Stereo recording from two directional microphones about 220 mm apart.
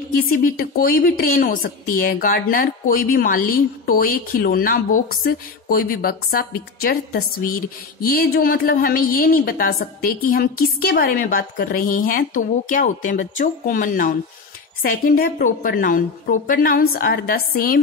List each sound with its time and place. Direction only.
0.1 s a woman's voice: 40° left (ahead or behind)